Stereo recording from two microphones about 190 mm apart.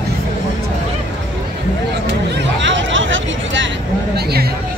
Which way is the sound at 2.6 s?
80° right.